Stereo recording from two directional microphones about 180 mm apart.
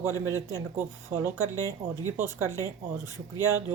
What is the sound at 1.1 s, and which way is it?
Speech, 15° right (ahead or behind).